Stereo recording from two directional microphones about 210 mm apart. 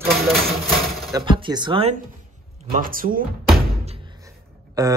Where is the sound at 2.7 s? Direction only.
40° right (ahead or behind).